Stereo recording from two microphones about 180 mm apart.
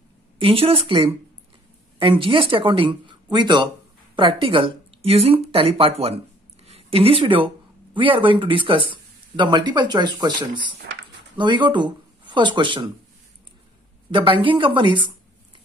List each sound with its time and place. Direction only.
0.4 s a woman's voice: 30° right (ahead or behind)
14.1 s speech: 25° right (ahead or behind)